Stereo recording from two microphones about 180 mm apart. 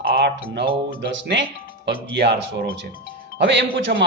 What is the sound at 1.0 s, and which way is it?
Speech, 75° right (ahead or behind).